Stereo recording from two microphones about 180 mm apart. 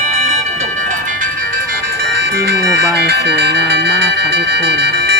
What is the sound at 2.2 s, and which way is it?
Music, 60° right (ahead or behind).